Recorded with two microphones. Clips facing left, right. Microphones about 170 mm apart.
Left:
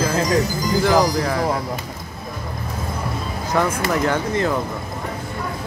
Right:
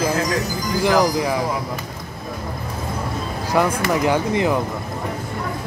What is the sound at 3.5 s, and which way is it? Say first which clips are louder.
Speech: right 1 dB; 15° right (ahead or behind).